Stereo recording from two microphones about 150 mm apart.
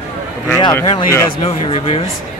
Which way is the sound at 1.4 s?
40° left (ahead or behind).